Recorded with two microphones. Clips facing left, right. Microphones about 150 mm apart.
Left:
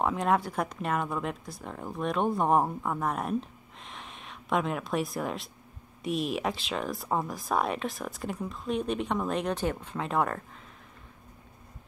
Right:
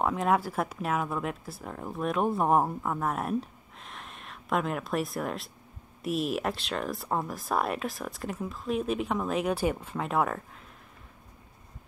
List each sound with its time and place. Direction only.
0.0 s speech: centre (ahead or behind)